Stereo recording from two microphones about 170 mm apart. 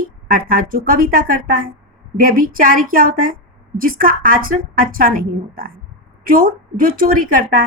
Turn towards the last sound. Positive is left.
turn(degrees=-55)  # may be behind; listen again after turning